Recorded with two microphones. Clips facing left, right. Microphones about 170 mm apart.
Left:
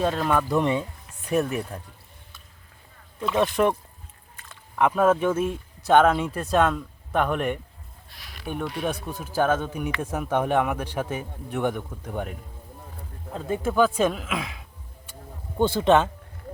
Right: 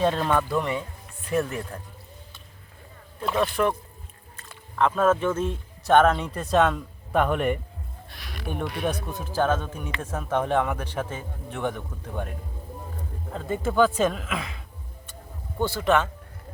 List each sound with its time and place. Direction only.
0.0 s a man's voice: centre (ahead or behind)
3.3 s speech: 20° left (ahead or behind)
4.8 s speech: 15° left (ahead or behind)
8.1 s a sound: 65° right (ahead or behind)
8.4 s a man's voice: centre (ahead or behind)
13.3 s a man's voice: 10° left (ahead or behind)
15.5 s speech: 20° left (ahead or behind)